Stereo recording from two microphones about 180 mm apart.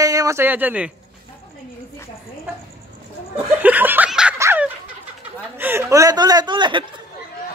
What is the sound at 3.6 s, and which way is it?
Snicker, 10° right (ahead or behind).